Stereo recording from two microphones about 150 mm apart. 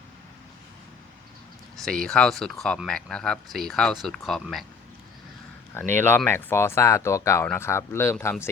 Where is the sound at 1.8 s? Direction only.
5° left (ahead or behind).